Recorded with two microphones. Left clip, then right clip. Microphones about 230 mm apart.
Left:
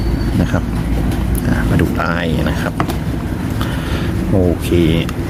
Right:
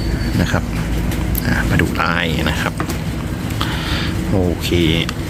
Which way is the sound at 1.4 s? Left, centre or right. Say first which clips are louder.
Even; centre.